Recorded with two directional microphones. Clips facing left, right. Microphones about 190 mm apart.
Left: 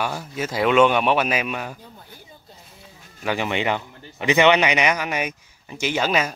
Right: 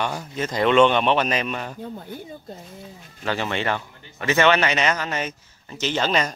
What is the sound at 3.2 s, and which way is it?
A man's voice, 15° left (ahead or behind).